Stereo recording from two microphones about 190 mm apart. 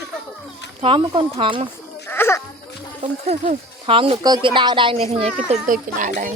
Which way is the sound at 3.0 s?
35° right (ahead or behind).